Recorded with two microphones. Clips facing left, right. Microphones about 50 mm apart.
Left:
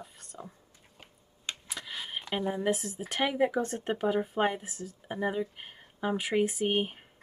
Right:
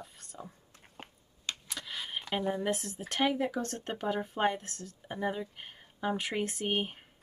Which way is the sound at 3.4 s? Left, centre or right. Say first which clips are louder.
Left 5 dB; centre.